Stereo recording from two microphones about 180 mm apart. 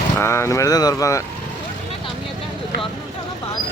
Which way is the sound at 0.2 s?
15° left (ahead or behind).